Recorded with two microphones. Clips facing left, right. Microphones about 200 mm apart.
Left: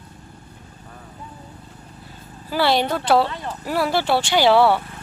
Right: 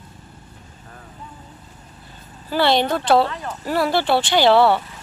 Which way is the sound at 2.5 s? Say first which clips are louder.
Right 1 dB; 5° left (ahead or behind).